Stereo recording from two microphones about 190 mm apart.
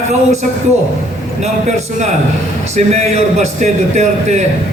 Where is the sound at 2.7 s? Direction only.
35° right (ahead or behind).